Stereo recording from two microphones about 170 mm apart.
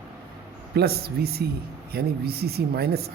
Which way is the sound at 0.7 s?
65° right (ahead or behind).